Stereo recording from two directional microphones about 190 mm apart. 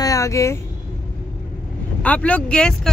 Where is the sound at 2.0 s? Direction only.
5° left (ahead or behind).